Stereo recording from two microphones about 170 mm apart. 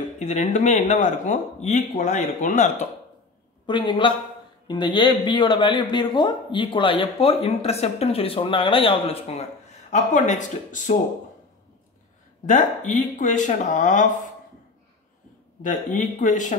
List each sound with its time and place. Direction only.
0.2 s speech: 45° left (ahead or behind)
3.6 s a man's voice: 30° left (ahead or behind); by 11.0 s 45° left (ahead or behind)
12.4 s speech: 45° left (ahead or behind)
15.6 s speech: 50° left (ahead or behind)